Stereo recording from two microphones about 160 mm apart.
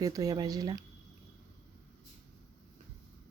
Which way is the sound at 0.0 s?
20° right (ahead or behind).